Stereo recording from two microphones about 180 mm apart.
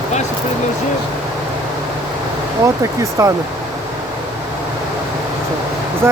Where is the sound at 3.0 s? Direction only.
15° right (ahead or behind).